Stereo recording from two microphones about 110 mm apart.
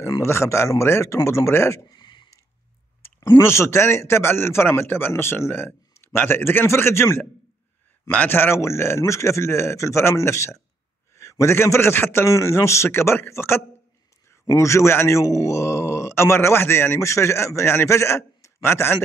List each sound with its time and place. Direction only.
0.2 s speech: 25° left (ahead or behind)
2.0 s a sound: 45° left (ahead or behind)
3.3 s speech: 30° left (ahead or behind)